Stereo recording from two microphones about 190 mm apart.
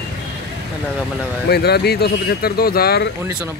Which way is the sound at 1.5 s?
60° left (ahead or behind).